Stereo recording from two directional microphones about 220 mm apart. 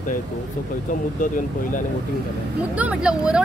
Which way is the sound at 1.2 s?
35° left (ahead or behind).